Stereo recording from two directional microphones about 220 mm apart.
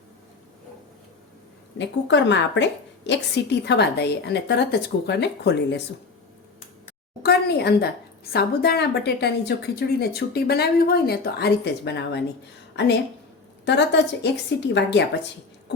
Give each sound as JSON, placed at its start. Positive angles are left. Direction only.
{"t": 1.8, "sound": "a woman's voice", "side_deg": 55}
{"t": 7.2, "sound": "a sound", "side_deg": 45}
{"t": 8.3, "sound": "a woman's voice", "side_deg": 45}
{"t": 13.7, "sound": "a woman's voice", "side_deg": 50}